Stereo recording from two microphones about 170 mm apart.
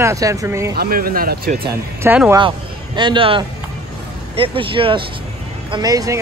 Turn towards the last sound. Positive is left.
turn(degrees=-20)  # may be behind; listen again after turning